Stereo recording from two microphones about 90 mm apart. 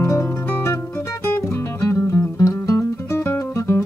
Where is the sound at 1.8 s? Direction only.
35° left (ahead or behind).